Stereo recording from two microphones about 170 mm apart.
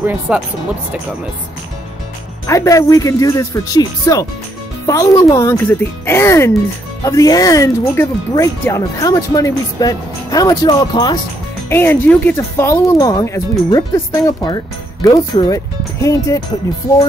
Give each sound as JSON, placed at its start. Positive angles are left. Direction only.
{"t": 0.0, "sound": "speech", "side_deg": -10}
{"t": 2.4, "sound": "speech", "side_deg": 20}
{"t": 11.7, "sound": "speech", "side_deg": 10}